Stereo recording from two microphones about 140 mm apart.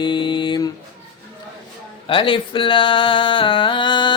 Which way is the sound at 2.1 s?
35° left (ahead or behind).